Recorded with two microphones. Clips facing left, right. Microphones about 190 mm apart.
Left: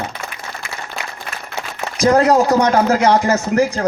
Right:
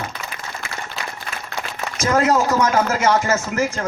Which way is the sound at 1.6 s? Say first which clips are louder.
Left 5 dB; 35° left (ahead or behind).